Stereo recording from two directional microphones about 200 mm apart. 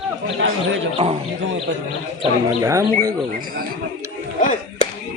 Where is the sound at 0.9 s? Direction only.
30° right (ahead or behind).